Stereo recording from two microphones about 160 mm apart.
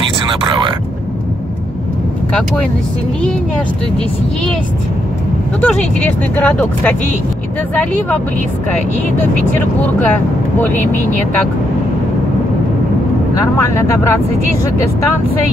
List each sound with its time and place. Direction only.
5.6 s speech: 10° left (ahead or behind)
9.2 s speech: 10° left (ahead or behind)
13.6 s speech: 15° left (ahead or behind)